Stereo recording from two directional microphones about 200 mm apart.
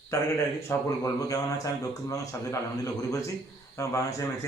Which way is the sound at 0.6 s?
15° left (ahead or behind).